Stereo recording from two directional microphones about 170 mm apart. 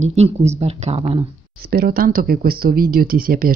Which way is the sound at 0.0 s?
40° right (ahead or behind).